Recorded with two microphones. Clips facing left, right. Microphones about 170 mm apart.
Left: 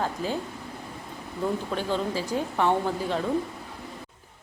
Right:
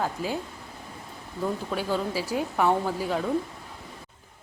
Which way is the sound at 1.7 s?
10° right (ahead or behind).